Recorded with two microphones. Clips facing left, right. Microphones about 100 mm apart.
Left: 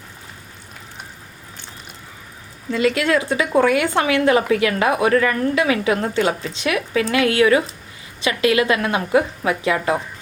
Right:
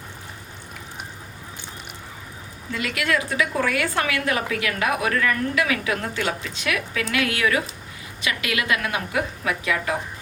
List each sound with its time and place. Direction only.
2.7 s a woman's voice: 30° left (ahead or behind)